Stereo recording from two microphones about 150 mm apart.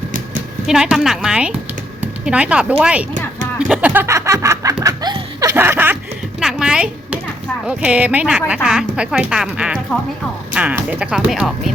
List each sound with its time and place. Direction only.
0.7 s a woman's voice: 5° right (ahead or behind)
3.7 s music: 10° right (ahead or behind)
6.4 s a sound: 5° right (ahead or behind)
7.7 s speech: 10° right (ahead or behind)